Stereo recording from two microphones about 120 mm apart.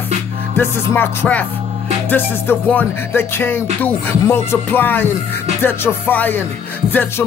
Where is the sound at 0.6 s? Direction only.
20° left (ahead or behind).